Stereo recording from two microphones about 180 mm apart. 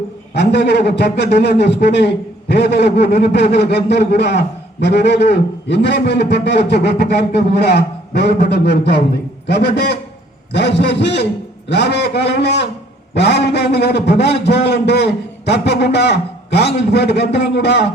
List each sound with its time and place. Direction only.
0.3 s a man's voice: 70° left (ahead or behind)